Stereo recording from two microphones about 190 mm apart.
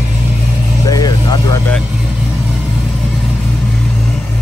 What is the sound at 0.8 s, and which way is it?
Vehicle, 20° left (ahead or behind).